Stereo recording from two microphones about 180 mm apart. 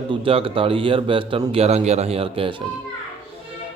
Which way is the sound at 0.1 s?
30° right (ahead or behind).